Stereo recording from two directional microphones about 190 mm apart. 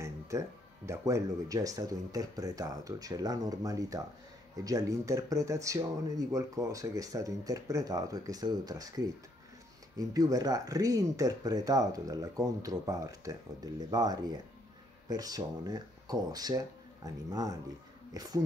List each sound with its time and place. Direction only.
0.0 s speech: 15° right (ahead or behind)